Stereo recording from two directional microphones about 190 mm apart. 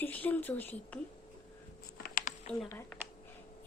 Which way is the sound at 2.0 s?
50° left (ahead or behind).